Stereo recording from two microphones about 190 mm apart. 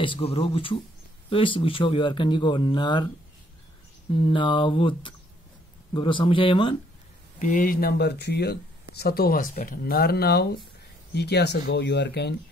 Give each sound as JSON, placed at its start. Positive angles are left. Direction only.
{"t": 0.0, "sound": "speech", "side_deg": 30}
{"t": 4.1, "sound": "speech", "side_deg": 25}
{"t": 7.3, "sound": "speech", "side_deg": 40}